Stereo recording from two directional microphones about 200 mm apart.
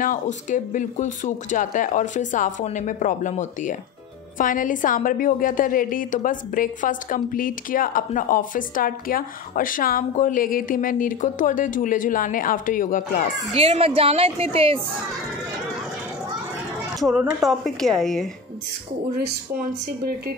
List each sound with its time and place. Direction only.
0.0 s a woman's voice: 40° left (ahead or behind)
13.5 s a woman's voice: 30° right (ahead or behind)
17.1 s a woman's voice: 5° right (ahead or behind)